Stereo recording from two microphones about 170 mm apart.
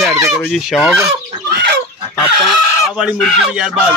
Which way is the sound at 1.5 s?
75° right (ahead or behind).